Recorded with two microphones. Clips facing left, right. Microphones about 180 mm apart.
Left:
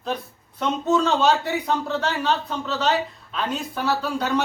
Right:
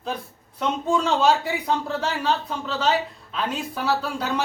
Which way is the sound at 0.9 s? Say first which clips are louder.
Left 1 dB; 5° right (ahead or behind).